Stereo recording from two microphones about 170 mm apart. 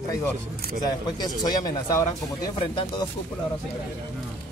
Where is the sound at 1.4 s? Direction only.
25° left (ahead or behind).